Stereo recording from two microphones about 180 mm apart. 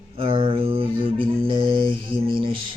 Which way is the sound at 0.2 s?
30° right (ahead or behind).